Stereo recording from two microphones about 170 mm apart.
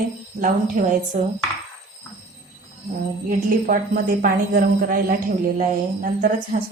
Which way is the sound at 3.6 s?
55° right (ahead or behind).